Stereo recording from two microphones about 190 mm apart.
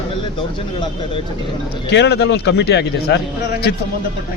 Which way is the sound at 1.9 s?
65° left (ahead or behind).